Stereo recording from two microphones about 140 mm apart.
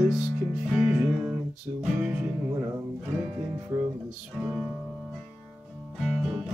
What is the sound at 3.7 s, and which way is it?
Speech, 20° right (ahead or behind).